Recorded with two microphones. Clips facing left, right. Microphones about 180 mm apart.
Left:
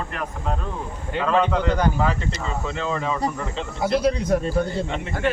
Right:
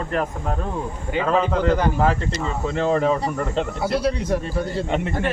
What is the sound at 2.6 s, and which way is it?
Speech, 50° right (ahead or behind).